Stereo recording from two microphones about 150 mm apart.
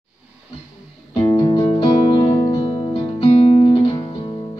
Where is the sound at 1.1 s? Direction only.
30° left (ahead or behind).